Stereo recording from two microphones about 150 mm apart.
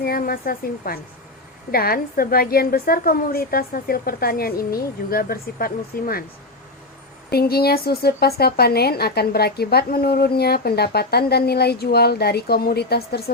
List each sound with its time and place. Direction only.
0.0 s a woman's voice: 80° left
7.3 s a woman's voice: 90° left